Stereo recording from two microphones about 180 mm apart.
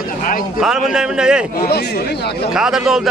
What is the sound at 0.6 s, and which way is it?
Speech, 5° right (ahead or behind).